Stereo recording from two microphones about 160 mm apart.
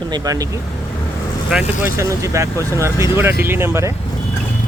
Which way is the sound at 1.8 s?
20° right (ahead or behind).